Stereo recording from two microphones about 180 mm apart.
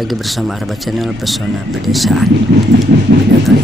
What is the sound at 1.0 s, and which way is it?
Speech, centre (ahead or behind).